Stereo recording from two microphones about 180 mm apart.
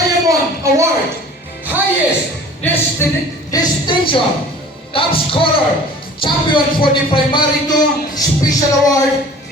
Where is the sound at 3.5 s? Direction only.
25° left (ahead or behind).